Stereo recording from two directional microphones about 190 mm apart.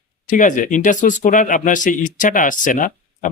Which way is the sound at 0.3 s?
40° left (ahead or behind).